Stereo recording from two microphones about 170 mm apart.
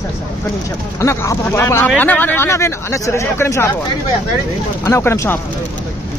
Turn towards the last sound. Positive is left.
turn(degrees=15)  # may be behind; listen again after turning